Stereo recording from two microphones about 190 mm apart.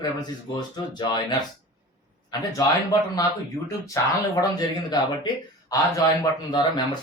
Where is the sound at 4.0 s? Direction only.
15° left (ahead or behind).